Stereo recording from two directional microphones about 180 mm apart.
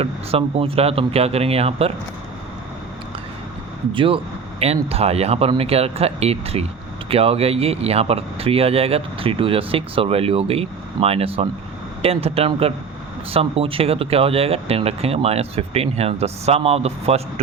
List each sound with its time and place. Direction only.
0.0 s speech: 35° right (ahead or behind)
3.9 s speech: 30° right (ahead or behind)